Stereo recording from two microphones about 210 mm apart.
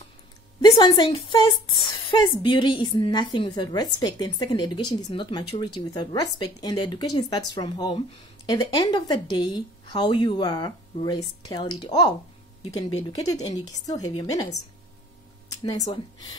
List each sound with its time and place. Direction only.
0.6 s a woman's voice: 20° left (ahead or behind)
15.6 s speech: 20° left (ahead or behind)